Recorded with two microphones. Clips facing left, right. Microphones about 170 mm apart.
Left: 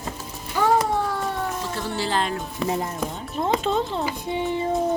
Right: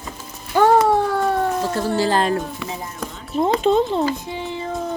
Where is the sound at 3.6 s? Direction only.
20° right (ahead or behind).